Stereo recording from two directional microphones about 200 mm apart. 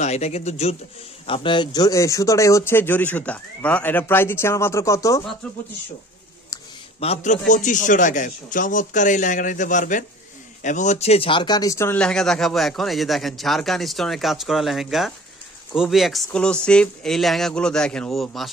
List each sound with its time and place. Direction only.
0.0 s a man's voice: 35° left (ahead or behind); by 5.2 s 15° left (ahead or behind)
7.0 s a man's voice: 35° left (ahead or behind); by 18.5 s centre (ahead or behind)